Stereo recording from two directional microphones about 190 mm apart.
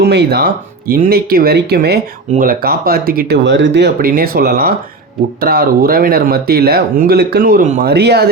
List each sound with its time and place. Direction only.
0.0 s speech: 60° right (ahead or behind)